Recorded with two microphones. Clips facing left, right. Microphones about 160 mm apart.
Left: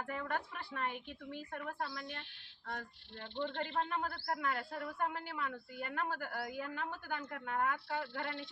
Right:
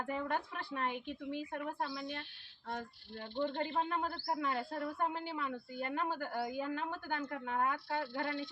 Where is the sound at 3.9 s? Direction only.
25° right (ahead or behind).